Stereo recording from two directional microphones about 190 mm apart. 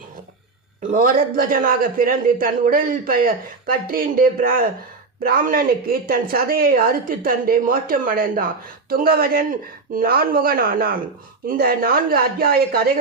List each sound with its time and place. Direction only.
0.8 s a woman's voice: 45° right (ahead or behind)